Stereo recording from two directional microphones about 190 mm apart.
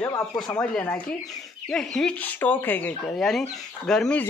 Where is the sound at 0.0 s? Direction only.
15° left (ahead or behind).